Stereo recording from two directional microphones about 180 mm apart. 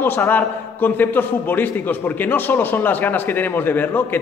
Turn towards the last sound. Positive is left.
turn(degrees=10)  # may be behind; listen again after turning